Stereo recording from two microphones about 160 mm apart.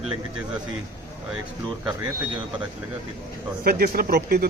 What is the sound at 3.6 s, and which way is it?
Speech, 70° right (ahead or behind).